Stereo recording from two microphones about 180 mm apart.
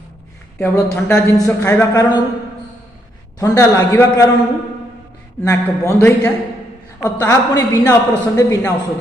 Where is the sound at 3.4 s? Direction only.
15° left (ahead or behind).